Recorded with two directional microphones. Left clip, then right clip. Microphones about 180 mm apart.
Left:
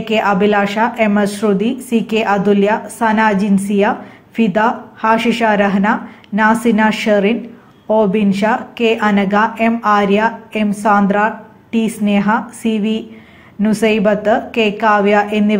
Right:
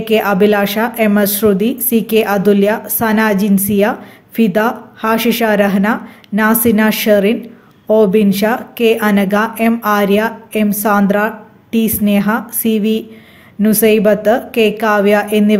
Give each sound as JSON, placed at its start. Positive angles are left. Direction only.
{"t": 0.0, "sound": "a woman's voice", "side_deg": -35}